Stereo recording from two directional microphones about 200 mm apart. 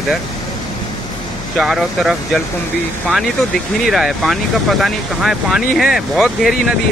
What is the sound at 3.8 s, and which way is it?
Speech, centre (ahead or behind).